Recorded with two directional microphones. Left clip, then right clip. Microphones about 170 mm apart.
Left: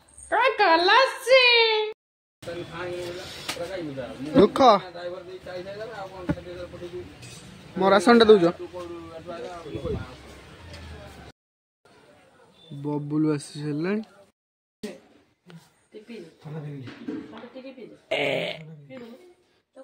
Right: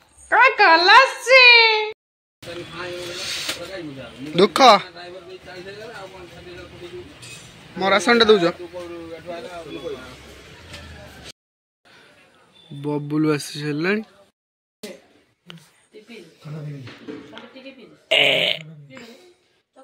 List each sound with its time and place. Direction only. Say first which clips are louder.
0.3 s a sound: right 6 dB; 5° left (ahead or behind)
4.4 s speech: right 4 dB; 10° left (ahead or behind)
7.8 s a man's voice: right 1 dB; 30° left (ahead or behind)
8.3 s speech: right 1 dB; 20° left (ahead or behind)
13.1 s speech: right 4 dB; 5° right (ahead or behind)
15.5 s a sound: right 8 dB; 5° left (ahead or behind)
18.0 s fart: right 9 dB; 5° left (ahead or behind)